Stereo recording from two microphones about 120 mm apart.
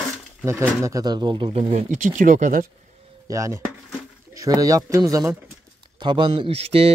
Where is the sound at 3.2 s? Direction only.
25° right (ahead or behind).